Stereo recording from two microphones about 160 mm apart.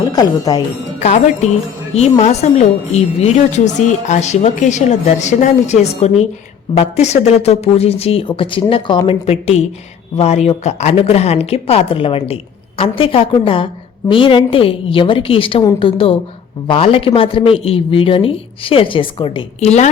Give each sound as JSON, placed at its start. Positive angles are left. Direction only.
{"t": 0.2, "sound": "speech", "side_deg": 25}
{"t": 1.0, "sound": "a woman's voice", "side_deg": 45}